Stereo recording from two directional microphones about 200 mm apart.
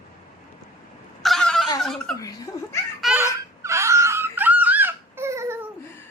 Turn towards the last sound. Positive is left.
turn(degrees=-15)  # may be behind; listen again after turning